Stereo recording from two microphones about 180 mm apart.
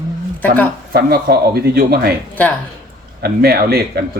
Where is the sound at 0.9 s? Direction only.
60° right (ahead or behind).